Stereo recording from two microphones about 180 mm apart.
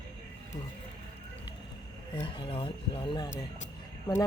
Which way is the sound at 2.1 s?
25° left (ahead or behind).